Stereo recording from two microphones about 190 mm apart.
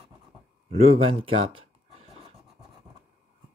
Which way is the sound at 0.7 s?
30° right (ahead or behind).